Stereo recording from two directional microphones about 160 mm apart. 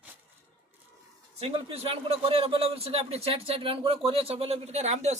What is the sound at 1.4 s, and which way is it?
Speech, 35° right (ahead or behind).